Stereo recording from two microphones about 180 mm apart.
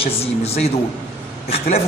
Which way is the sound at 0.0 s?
35° left (ahead or behind).